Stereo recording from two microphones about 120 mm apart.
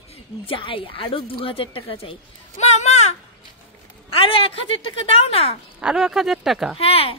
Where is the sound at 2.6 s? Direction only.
70° left (ahead or behind).